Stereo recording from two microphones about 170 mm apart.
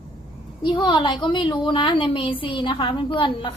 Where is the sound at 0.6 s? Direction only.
30° left (ahead or behind).